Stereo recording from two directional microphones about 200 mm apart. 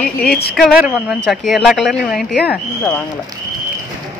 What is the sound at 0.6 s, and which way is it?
Speech, centre (ahead or behind).